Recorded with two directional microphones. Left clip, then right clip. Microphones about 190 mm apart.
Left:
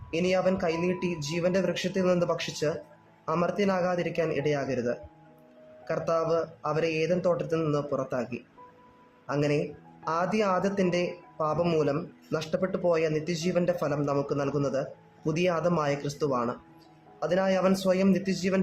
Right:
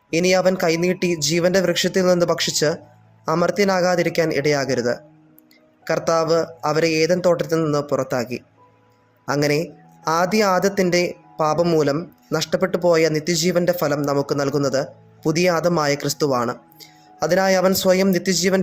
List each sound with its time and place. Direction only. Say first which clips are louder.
0.1 s speech: right 9 dB; 35° right (ahead or behind)